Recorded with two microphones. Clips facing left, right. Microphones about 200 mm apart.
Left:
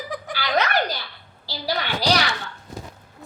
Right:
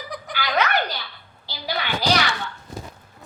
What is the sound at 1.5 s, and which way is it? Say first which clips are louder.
Speech: left 1 dB; 40° left (ahead or behind).